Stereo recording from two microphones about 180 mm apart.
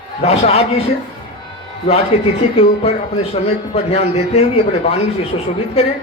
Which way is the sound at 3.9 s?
35° left (ahead or behind).